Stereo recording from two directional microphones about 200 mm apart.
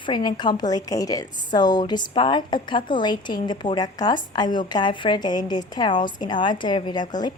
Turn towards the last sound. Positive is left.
turn(degrees=20)  # may be behind; listen again after turning